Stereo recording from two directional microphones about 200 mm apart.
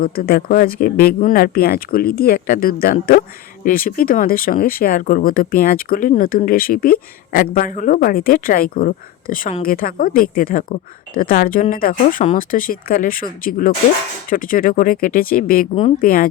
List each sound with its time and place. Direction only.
0.0 s speech: 50° left (ahead or behind)